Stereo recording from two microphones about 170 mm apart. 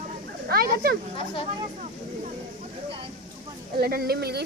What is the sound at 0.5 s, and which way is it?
Speech, 60° right (ahead or behind).